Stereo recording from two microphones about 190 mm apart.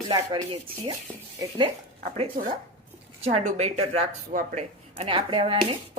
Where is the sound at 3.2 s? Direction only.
40° right (ahead or behind).